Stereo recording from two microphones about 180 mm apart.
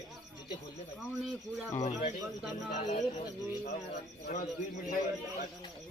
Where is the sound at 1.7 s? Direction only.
40° left (ahead or behind).